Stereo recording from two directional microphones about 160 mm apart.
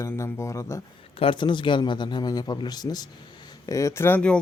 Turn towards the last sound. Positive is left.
turn(degrees=10)  # may be behind; listen again after turning